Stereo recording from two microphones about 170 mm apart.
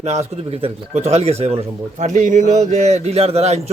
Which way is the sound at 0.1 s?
40° right (ahead or behind).